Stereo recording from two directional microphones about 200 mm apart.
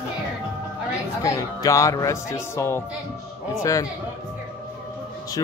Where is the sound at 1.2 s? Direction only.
15° left (ahead or behind).